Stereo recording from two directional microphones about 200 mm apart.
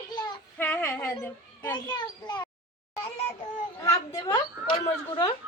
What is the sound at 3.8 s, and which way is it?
A woman's voice, 15° left (ahead or behind).